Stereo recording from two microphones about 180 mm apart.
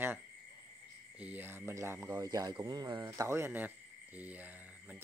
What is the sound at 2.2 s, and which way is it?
Speech, 20° right (ahead or behind).